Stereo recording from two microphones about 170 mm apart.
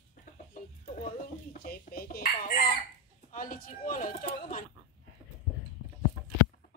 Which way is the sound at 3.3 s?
50° left (ahead or behind).